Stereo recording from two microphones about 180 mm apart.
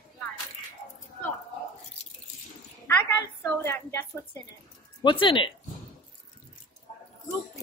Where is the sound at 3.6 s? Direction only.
10° left (ahead or behind).